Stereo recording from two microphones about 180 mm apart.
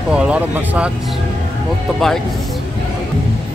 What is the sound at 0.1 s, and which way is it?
Speech, 5° right (ahead or behind).